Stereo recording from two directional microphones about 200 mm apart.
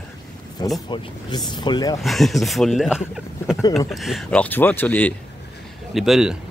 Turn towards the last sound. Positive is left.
turn(degrees=0)  # may be behind; listen again after turning